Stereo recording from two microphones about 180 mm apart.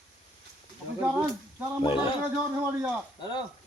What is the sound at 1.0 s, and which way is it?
Speech, 15° right (ahead or behind).